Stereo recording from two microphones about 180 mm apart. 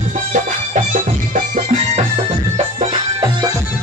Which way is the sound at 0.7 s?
45° right (ahead or behind).